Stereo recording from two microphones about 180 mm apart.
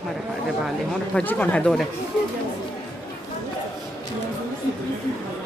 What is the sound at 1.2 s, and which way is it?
Speech, 10° left (ahead or behind).